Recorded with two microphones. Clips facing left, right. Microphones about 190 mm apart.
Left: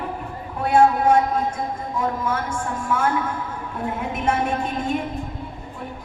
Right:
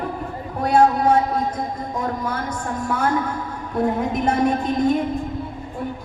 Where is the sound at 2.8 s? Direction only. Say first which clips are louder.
Even; 40° right (ahead or behind).